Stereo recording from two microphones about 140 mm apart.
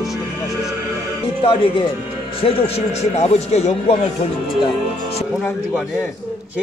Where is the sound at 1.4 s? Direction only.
40° left (ahead or behind).